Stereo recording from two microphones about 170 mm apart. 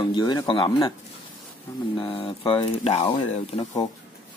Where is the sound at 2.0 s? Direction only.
30° left (ahead or behind).